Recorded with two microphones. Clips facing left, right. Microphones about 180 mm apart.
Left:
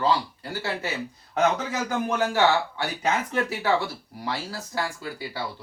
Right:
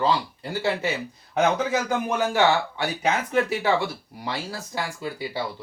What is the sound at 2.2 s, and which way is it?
Speech, 15° right (ahead or behind).